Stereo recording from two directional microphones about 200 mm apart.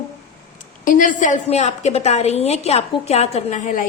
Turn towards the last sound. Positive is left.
turn(degrees=40)  # may be behind; listen again after turning